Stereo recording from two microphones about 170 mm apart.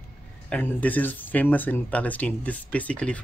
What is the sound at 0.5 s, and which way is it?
Speech, 10° left (ahead or behind).